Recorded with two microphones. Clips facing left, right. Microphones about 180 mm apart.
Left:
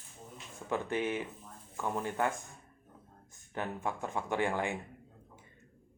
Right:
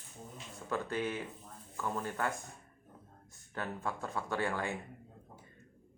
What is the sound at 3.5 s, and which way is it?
Speech, 20° left (ahead or behind).